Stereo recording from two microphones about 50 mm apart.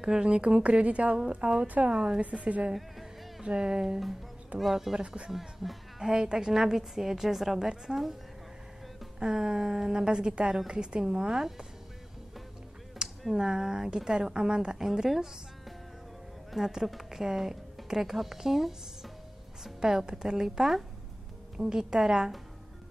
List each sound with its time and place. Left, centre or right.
0.0 s speech: centre
2.7 s music: centre
3.4 s a woman's voice: centre
4.6 s speech: centre
4.9 s speech: right
5.3 s a woman's voice: centre
9.2 s a woman's voice: centre
13.3 s a woman's voice: centre
16.5 s a woman's voice: centre